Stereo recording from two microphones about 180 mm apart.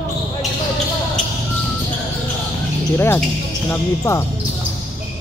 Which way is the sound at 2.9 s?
15° left (ahead or behind).